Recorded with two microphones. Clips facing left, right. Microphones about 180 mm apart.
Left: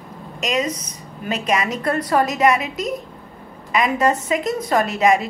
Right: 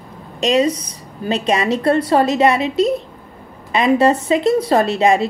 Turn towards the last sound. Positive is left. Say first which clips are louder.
# right 3 dB
turn(degrees=-30)  # may be behind; listen again after turning